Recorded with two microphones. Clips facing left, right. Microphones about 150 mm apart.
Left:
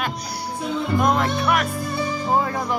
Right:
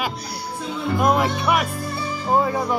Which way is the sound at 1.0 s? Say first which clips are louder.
Right 3 dB; 5° right (ahead or behind).